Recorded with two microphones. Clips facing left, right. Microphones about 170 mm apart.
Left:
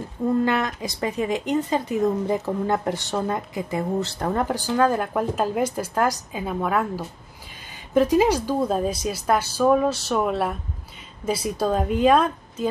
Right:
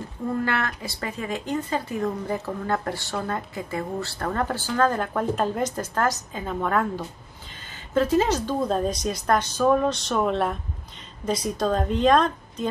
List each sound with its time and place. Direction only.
0.5 s speech: 15° left (ahead or behind)